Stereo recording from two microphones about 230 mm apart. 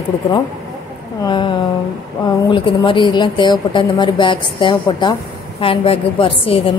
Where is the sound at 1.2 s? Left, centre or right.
Centre.